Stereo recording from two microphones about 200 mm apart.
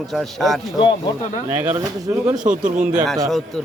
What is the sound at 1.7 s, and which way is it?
Speech, 15° right (ahead or behind).